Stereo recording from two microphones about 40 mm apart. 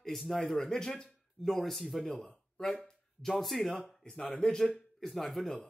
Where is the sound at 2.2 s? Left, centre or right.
Centre.